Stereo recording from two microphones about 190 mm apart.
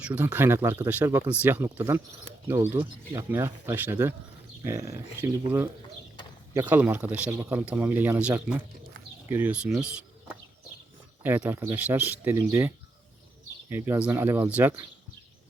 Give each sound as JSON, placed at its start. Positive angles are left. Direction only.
{"t": 0.0, "sound": "speech", "side_deg": -5}
{"t": 6.5, "sound": "speech", "side_deg": -10}
{"t": 11.2, "sound": "speech", "side_deg": -10}